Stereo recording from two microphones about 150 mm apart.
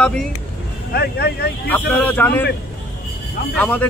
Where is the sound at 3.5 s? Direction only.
10° left (ahead or behind).